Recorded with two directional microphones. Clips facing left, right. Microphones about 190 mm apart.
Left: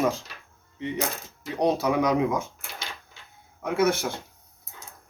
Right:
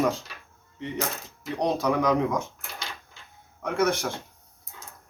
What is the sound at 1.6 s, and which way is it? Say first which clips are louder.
Speech: left 2 dB; 5° left (ahead or behind).